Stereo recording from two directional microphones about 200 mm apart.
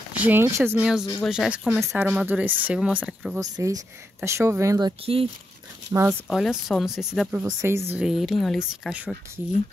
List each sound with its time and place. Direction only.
0.1 s speech: 10° right (ahead or behind)
3.3 s speech: 15° right (ahead or behind)
6.2 s speech: centre (ahead or behind)
7.9 s speech: 5° right (ahead or behind)